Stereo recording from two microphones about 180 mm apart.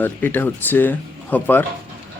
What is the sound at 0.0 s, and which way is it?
Speech, 10° left (ahead or behind).